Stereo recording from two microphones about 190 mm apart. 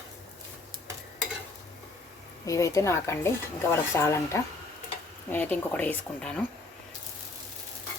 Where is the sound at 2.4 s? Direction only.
15° left (ahead or behind).